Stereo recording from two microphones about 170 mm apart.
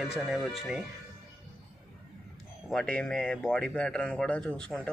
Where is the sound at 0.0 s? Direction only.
Centre (ahead or behind).